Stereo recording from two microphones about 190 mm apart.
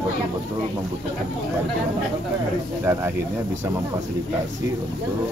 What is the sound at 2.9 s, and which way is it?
Speech, 15° right (ahead or behind).